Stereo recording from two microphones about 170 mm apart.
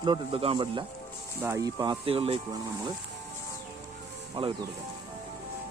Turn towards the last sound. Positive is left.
turn(degrees=-30)  # may be behind; listen again after turning